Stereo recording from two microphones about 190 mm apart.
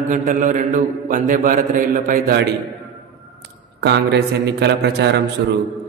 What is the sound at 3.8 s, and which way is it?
Speech, 60° right (ahead or behind).